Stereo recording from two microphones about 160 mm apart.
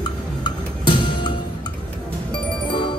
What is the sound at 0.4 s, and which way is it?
Music, 30° left (ahead or behind).